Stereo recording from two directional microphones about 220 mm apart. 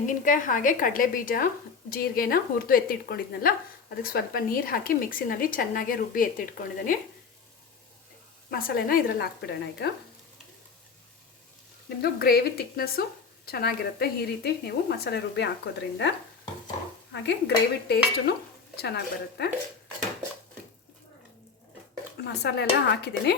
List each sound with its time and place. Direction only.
0.1 s a woman's voice: 35° left (ahead or behind)
8.4 s speech: 40° left (ahead or behind)
11.9 s speech: 45° left (ahead or behind)
22.2 s speech: 50° left (ahead or behind)